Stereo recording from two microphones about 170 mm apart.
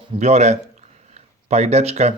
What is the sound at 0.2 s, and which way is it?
Speech, 40° right (ahead or behind).